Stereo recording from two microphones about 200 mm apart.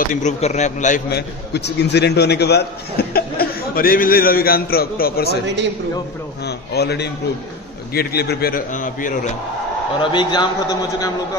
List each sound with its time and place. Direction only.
0.1 s a man's voice: 35° left (ahead or behind)
1.1 s a man's voice: 55° left (ahead or behind)
6.4 s a man's voice: 55° left (ahead or behind)
10.1 s a man's voice: 20° left (ahead or behind)